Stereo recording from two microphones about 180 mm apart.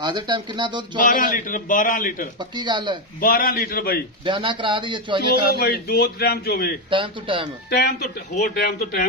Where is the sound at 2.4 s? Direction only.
25° right (ahead or behind).